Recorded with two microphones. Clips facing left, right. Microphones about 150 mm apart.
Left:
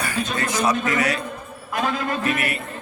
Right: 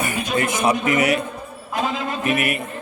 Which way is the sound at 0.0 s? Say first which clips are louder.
Right 3 dB; 15° right (ahead or behind).